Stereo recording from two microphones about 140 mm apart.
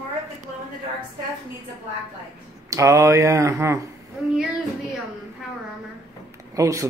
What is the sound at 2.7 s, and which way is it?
Speech, 25° right (ahead or behind).